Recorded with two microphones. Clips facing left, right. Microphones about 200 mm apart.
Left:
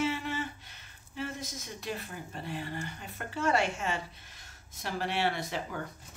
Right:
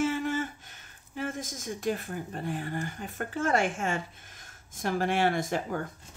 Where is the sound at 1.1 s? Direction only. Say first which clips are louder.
Right 3 dB; 50° right (ahead or behind).